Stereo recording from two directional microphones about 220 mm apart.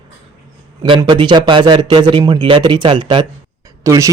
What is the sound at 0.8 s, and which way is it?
Speech, 20° right (ahead or behind).